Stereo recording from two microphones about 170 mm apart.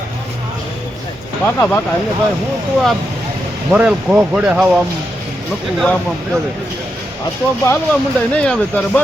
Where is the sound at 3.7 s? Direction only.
5° right (ahead or behind).